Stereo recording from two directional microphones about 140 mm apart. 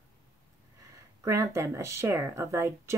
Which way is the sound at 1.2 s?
20° right (ahead or behind).